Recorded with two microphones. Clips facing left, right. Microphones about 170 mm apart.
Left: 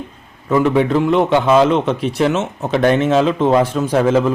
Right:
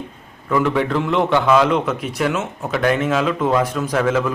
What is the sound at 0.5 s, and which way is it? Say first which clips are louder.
A man's voice: left 4 dB; 20° left (ahead or behind).